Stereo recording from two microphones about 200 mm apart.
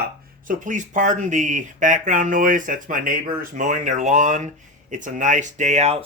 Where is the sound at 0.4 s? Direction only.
40° right (ahead or behind).